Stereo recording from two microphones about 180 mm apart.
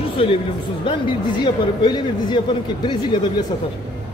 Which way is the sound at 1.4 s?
25° left (ahead or behind).